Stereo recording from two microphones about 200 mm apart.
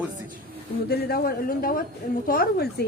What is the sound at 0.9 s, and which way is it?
Speech, 50° left (ahead or behind).